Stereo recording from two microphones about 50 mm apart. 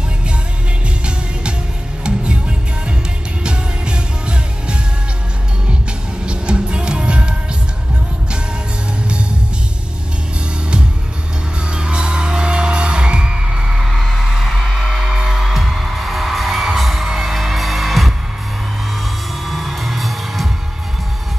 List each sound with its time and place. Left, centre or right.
2.0 s music: right
6.2 s music: centre
11.7 s music: centre
19.4 s music: centre